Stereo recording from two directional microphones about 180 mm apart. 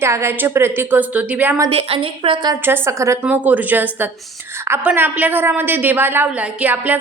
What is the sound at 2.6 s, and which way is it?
A woman's voice, 15° right (ahead or behind).